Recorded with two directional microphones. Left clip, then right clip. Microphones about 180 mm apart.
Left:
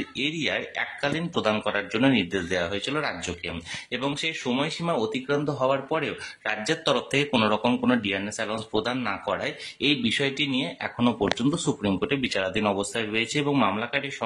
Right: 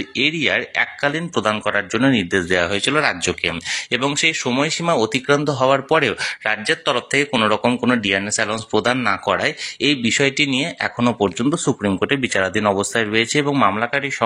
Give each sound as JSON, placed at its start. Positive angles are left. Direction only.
{"t": 0.2, "sound": "speech", "side_deg": -25}
{"t": 6.4, "sound": "speech", "side_deg": -20}